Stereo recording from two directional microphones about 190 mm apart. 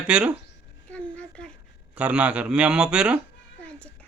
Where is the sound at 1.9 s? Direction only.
5° right (ahead or behind).